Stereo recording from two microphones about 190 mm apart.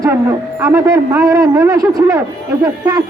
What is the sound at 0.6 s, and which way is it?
A man's voice, 15° right (ahead or behind).